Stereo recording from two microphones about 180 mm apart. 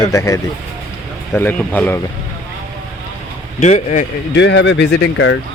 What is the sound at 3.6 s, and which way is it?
Speech, 40° left (ahead or behind).